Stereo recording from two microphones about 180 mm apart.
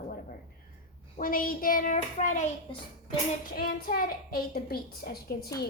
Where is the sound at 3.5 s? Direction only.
55° left (ahead or behind).